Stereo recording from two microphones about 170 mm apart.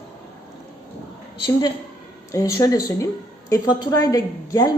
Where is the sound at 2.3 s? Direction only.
20° left (ahead or behind).